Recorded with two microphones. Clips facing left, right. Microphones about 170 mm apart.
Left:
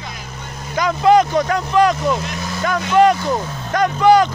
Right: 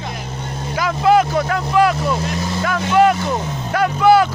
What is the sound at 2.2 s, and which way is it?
Vehicle, 30° right (ahead or behind).